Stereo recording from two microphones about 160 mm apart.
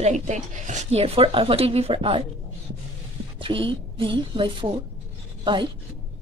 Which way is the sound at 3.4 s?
30° right (ahead or behind).